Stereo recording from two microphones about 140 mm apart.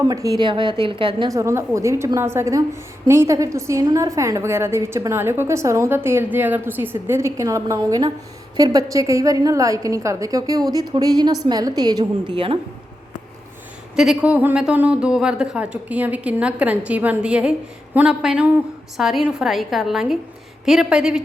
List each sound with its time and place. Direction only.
0.1 s a woman's voice: 25° right (ahead or behind)
1.3 s a woman's voice: 20° right (ahead or behind); by 12.5 s 35° right (ahead or behind)
13.9 s a woman's voice: 5° right (ahead or behind)